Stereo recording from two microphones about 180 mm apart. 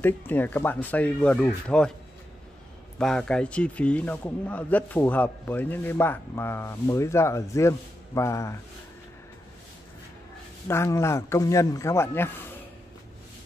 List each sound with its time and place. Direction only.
0.0 s speech: 10° left (ahead or behind)
3.0 s speech: 5° left (ahead or behind)
10.7 s speech: 15° left (ahead or behind)